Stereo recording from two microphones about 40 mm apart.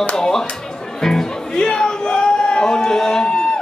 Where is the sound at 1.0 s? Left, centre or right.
Left.